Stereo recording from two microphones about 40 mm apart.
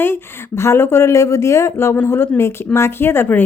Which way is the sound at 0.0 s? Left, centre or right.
Left.